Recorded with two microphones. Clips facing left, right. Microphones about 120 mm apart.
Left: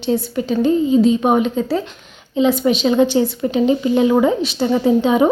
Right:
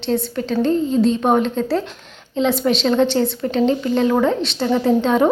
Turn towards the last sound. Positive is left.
turn(degrees=5)  # may be behind; listen again after turning